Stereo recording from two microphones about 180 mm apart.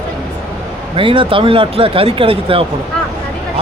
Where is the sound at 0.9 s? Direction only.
30° right (ahead or behind).